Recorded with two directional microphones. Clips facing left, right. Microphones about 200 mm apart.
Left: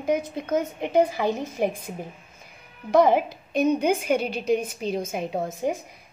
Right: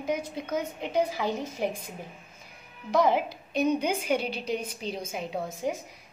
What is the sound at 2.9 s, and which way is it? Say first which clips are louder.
A woman's voice: left 5 dB; 50° left (ahead or behind).